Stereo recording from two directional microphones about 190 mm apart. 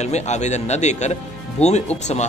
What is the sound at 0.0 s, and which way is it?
A man's voice, 35° left (ahead or behind).